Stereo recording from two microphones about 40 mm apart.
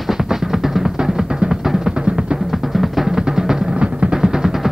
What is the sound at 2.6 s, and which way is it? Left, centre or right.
Music, centre.